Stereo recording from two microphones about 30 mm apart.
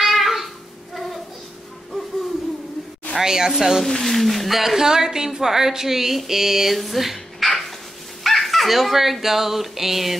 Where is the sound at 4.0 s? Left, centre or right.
Centre.